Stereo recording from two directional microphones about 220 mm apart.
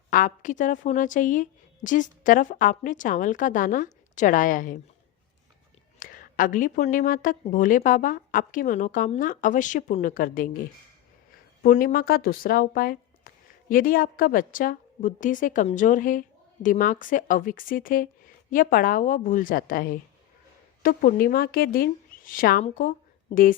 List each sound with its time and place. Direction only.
0.1 s a woman's voice: 35° left (ahead or behind)
6.0 s a woman's voice: 40° left (ahead or behind)
11.6 s a woman's voice: 40° left (ahead or behind)